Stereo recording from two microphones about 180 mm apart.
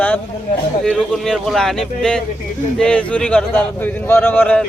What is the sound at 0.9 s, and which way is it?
A man's voice, 5° left (ahead or behind).